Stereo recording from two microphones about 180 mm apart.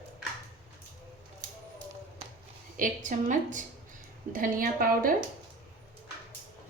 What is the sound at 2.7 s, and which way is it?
A woman's voice, 45° right (ahead or behind).